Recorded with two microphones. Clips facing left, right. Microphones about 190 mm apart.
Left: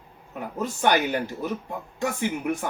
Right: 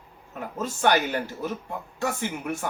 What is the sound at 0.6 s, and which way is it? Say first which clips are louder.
A man's voice: even; 15° left (ahead or behind).